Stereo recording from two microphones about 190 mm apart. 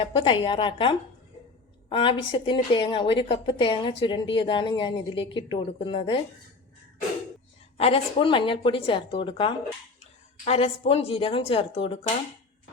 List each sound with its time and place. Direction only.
0.0 s speech: 30° left (ahead or behind)
7.8 s a woman's voice: 30° left (ahead or behind)